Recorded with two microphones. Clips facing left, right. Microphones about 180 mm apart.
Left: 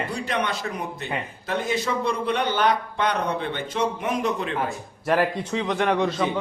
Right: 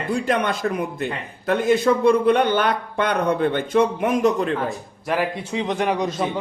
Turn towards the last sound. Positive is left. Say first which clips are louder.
# even
turn(degrees=-10)  # may be behind; listen again after turning